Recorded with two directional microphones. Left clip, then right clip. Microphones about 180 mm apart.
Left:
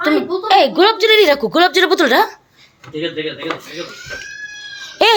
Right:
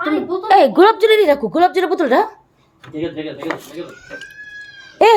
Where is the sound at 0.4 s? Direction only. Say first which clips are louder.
Right 1 dB; 30° right (ahead or behind).